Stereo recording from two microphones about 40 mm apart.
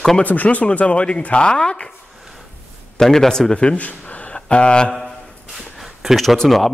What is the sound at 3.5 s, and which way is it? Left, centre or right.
Speech, left.